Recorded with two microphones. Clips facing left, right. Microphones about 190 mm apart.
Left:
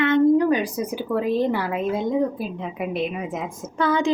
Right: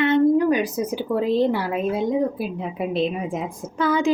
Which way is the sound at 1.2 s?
15° left (ahead or behind).